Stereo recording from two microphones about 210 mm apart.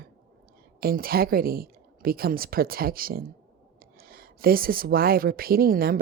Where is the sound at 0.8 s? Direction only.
45° right (ahead or behind).